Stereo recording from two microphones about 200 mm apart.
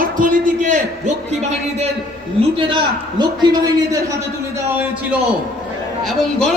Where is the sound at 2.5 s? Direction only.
25° right (ahead or behind).